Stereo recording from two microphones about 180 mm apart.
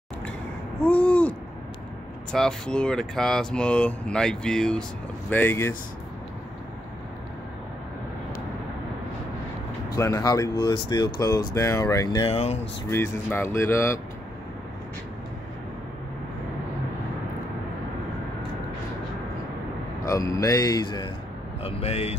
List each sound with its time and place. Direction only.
0.8 s owl: 10° left (ahead or behind)
2.3 s speech: 5° left (ahead or behind)
9.9 s speech: 15° left (ahead or behind)
12.3 s speech: 35° left (ahead or behind)
12.9 s speech: 15° left (ahead or behind)
20.3 s speech: 20° left (ahead or behind)
21.6 s speech: 35° left (ahead or behind)